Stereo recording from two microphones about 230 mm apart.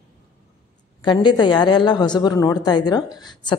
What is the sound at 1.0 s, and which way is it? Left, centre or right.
A woman's voice, centre.